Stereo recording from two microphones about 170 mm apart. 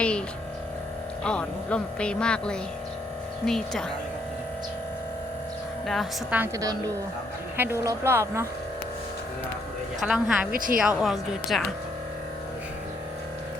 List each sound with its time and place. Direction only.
1.2 s speech: 5° left (ahead or behind)
5.8 s a woman's voice: centre (ahead or behind)
6.3 s speech: 10° right (ahead or behind)
10.0 s speech: 5° right (ahead or behind)
10.5 s speech: 55° right (ahead or behind)
10.8 s speech: 5° right (ahead or behind)